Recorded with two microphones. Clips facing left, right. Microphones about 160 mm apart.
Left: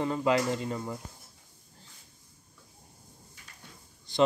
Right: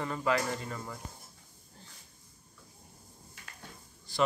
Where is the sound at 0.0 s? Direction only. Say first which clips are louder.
Left 4 dB; 20° left (ahead or behind).